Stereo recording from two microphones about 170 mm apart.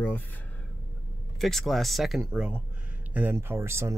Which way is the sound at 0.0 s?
10° left (ahead or behind).